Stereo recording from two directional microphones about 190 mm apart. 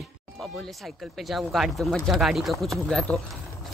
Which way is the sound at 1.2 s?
Centre (ahead or behind).